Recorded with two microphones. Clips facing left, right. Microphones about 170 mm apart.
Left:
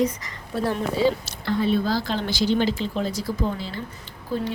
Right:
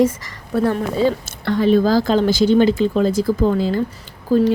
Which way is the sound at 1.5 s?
90° right.